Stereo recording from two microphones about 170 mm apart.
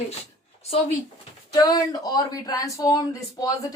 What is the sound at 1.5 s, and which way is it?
Speech, 20° left (ahead or behind).